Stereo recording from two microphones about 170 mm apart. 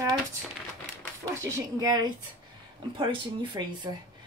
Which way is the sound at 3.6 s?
20° right (ahead or behind).